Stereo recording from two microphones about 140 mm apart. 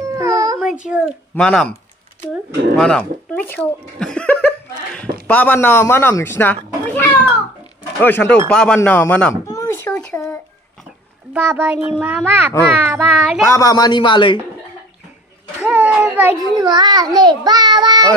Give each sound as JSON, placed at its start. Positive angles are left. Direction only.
{"t": 0.0, "sound": "baby cry", "side_deg": -20}
{"t": 0.8, "sound": "speech", "side_deg": -5}
{"t": 1.3, "sound": "speech", "side_deg": 5}
{"t": 2.8, "sound": "speech", "side_deg": 5}
{"t": 9.5, "sound": "a sound", "side_deg": 25}
{"t": 9.8, "sound": "a sound", "side_deg": 10}
{"t": 11.3, "sound": "a child's voice", "side_deg": -15}
{"t": 13.5, "sound": "speech", "side_deg": 25}
{"t": 15.6, "sound": "a sound", "side_deg": -10}
{"t": 16.4, "sound": "a child's voice", "side_deg": -25}